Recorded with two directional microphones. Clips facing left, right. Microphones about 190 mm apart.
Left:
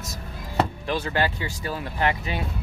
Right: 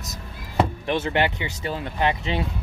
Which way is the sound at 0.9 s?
20° right (ahead or behind).